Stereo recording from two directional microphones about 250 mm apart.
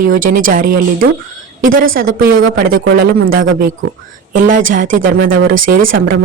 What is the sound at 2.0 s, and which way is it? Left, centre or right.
Speech, right.